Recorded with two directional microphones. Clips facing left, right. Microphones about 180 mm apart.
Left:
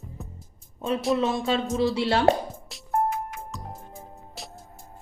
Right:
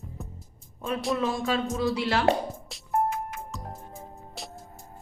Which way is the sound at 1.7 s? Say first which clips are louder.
Left 3 dB; 30° left (ahead or behind).